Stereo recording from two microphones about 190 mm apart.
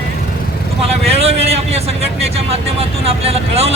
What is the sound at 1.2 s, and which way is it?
Vehicle, 35° right (ahead or behind).